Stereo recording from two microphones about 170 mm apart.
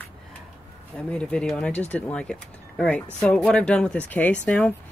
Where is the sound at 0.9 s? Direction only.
5° left (ahead or behind).